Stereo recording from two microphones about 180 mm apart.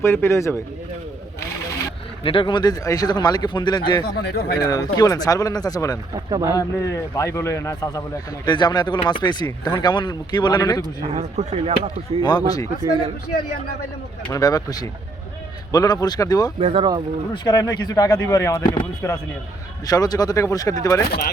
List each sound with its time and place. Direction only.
0.0 s a man's voice: 15° left (ahead or behind)
2.2 s speech: 30° left (ahead or behind)
4.0 s speech: 60° left (ahead or behind)
4.7 s speech: 20° left (ahead or behind)
6.1 s speech: 20° right (ahead or behind)
6.5 s a man's voice: 20° left (ahead or behind)
10.8 s speech: 35° right (ahead or behind)
14.3 s speech: 20° left (ahead or behind)
16.6 s speech: 30° right (ahead or behind)
17.3 s speech: 25° left (ahead or behind)